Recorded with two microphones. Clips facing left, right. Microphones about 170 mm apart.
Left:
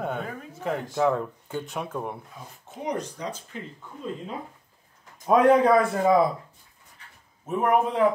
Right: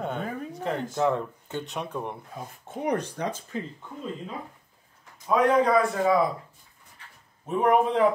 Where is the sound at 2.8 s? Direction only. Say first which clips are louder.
Right 3 dB; 60° right (ahead or behind).